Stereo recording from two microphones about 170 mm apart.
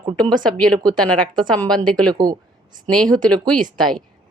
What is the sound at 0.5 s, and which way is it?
Speech, 5° left (ahead or behind).